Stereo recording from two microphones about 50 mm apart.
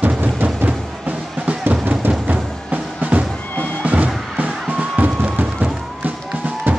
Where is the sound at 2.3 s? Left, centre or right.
Right.